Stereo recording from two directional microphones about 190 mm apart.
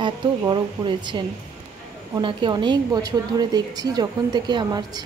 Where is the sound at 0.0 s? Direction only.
25° right (ahead or behind).